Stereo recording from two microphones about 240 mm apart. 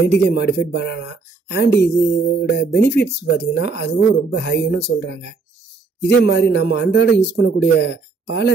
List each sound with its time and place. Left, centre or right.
0.0 s a man's voice: left
6.0 s a man's voice: left